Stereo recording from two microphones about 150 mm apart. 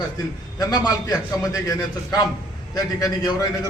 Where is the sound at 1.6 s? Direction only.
25° left (ahead or behind).